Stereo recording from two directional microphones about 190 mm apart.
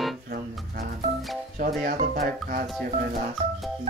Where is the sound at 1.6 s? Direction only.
45° right (ahead or behind).